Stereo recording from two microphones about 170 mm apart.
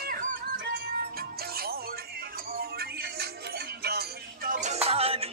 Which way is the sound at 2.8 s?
70° right (ahead or behind).